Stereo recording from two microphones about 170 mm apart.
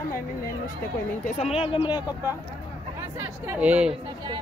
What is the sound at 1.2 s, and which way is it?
Speech, 35° left (ahead or behind).